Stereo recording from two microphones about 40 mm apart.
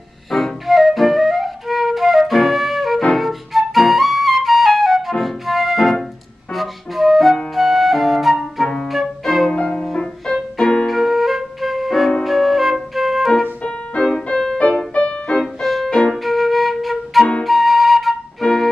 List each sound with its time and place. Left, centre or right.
0.3 s flute: centre
5.2 s music: centre
6.5 s flute: centre
8.8 s music: centre
13.4 s music: left
14.3 s music: centre
15.0 s music: left
15.4 s music: centre
16.1 s flute: centre
18.4 s music: centre